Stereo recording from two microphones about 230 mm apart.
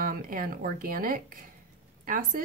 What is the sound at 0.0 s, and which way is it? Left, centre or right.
A woman's voice, right.